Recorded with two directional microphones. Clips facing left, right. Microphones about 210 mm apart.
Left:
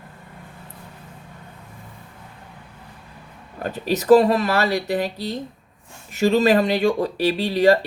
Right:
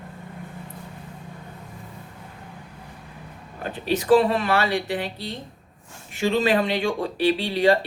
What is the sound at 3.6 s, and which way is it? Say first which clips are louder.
Speech: left 2 dB; 40° left (ahead or behind).